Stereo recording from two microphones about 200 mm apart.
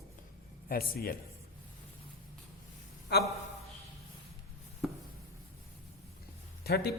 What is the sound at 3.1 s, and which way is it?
Speech, 55° left (ahead or behind).